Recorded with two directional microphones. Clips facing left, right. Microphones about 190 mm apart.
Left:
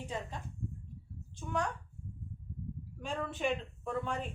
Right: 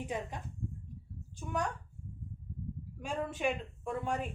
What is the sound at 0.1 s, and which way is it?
Speech, 15° right (ahead or behind).